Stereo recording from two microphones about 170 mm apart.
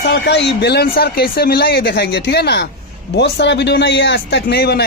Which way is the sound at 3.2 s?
90° left.